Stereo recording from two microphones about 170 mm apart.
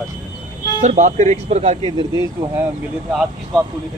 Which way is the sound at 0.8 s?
45° right (ahead or behind).